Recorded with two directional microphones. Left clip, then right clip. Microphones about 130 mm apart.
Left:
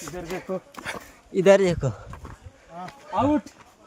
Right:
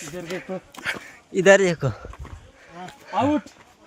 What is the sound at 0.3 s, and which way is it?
Speech, 20° left (ahead or behind).